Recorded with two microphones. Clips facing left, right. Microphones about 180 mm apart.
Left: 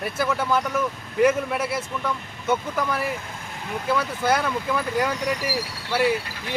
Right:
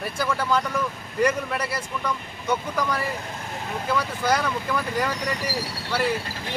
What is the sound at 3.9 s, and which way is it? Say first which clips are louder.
Speech: left 1 dB; 5° left (ahead or behind).